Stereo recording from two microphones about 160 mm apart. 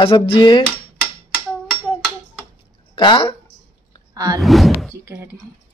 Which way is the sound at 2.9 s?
30° left (ahead or behind).